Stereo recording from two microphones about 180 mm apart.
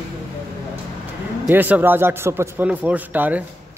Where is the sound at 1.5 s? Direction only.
10° right (ahead or behind).